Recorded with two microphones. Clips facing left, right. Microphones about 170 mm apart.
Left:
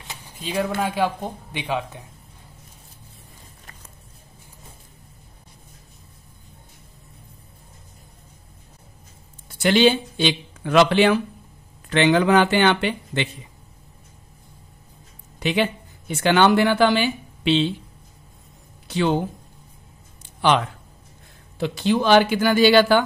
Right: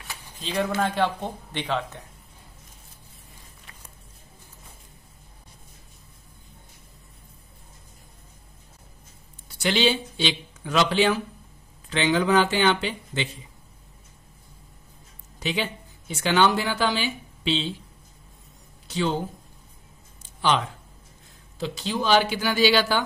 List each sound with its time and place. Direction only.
0.4 s speech: 10° left (ahead or behind)
9.5 s speech: 50° left (ahead or behind)
15.3 s speech: 60° left (ahead or behind)
18.9 s speech: 60° left (ahead or behind)
21.5 s speech: 60° left (ahead or behind)